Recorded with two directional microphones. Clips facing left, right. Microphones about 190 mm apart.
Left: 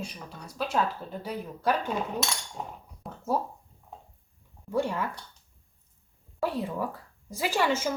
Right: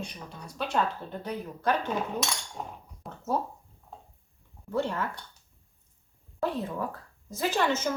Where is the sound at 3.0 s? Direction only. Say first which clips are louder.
Left 1 dB; centre (ahead or behind).